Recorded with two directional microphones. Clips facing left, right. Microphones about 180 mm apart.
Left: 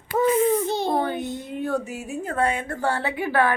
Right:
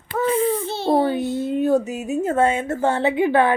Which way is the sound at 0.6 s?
15° left (ahead or behind).